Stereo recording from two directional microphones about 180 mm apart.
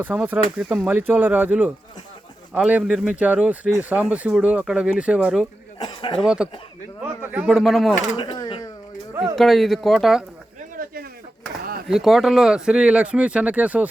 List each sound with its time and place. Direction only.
0.0 s speech: 10° right (ahead or behind)
5.8 s speech: 25° left (ahead or behind)
6.1 s speech: 5° right (ahead or behind)
8.1 s a sound: 25° left (ahead or behind)
9.3 s speech: centre (ahead or behind)
10.8 s a sound: 50° right (ahead or behind)
11.9 s speech: centre (ahead or behind)